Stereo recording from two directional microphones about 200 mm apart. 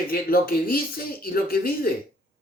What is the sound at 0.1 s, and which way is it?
Speech, 50° left (ahead or behind).